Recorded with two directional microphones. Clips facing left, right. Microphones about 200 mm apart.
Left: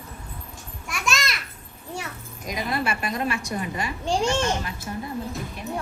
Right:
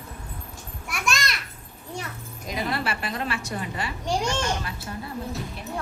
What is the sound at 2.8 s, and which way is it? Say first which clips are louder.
Speech: left 2 dB; 30° right (ahead or behind).